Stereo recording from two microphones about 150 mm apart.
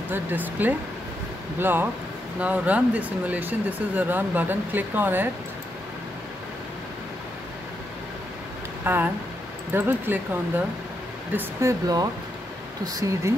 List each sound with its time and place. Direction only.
0.1 s speech: 10° right (ahead or behind)
8.8 s speech: 15° right (ahead or behind)
11.3 s speech: 20° right (ahead or behind)